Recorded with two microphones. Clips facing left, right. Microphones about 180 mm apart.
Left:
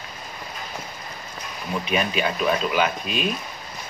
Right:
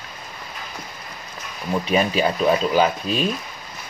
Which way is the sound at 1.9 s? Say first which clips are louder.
Right 4 dB; 35° right (ahead or behind).